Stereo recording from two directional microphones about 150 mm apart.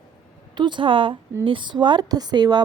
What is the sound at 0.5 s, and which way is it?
Speech, 30° right (ahead or behind).